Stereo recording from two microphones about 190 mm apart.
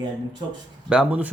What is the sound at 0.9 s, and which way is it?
Speech, 5° right (ahead or behind).